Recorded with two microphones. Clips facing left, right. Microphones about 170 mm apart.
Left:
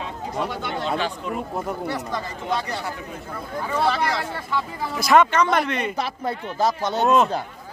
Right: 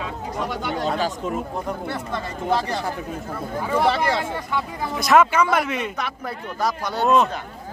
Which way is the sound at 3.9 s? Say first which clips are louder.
Right 2 dB; 25° right (ahead or behind).